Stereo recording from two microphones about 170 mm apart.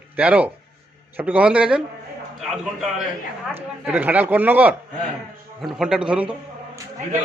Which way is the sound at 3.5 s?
10° right (ahead or behind).